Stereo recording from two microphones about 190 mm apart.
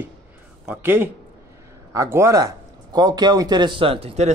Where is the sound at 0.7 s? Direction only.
10° right (ahead or behind).